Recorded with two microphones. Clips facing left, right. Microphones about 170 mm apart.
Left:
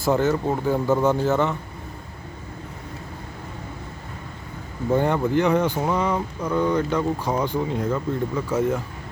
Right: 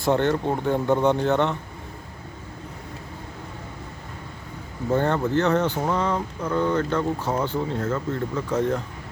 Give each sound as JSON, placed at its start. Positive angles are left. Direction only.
{"t": 0.0, "sound": "speech", "side_deg": 5}
{"t": 4.9, "sound": "speech", "side_deg": 10}